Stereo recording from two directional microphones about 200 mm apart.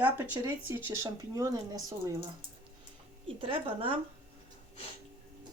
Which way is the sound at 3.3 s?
25° right (ahead or behind).